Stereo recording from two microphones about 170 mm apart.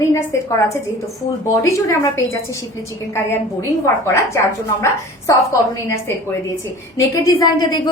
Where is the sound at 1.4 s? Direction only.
20° left (ahead or behind).